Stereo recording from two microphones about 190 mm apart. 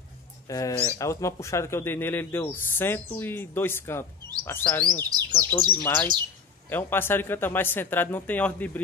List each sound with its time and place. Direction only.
0.5 s speech: 15° left (ahead or behind)
5.1 s speech: 20° right (ahead or behind)
5.5 s speech: 10° left (ahead or behind)